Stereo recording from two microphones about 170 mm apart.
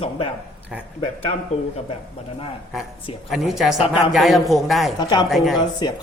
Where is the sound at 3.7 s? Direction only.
35° left (ahead or behind).